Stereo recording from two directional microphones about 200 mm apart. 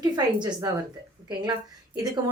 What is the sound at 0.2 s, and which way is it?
Speech, 20° right (ahead or behind).